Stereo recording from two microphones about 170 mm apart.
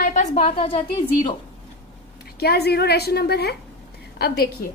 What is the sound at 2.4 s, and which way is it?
A woman's voice, 70° left (ahead or behind).